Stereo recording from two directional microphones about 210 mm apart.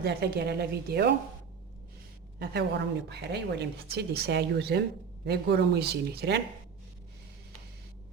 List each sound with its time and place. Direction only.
0.0 s speech: 50° right (ahead or behind)
2.4 s speech: 50° right (ahead or behind)